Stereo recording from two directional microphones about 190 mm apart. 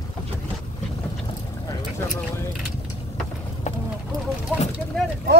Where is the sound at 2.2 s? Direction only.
15° left (ahead or behind).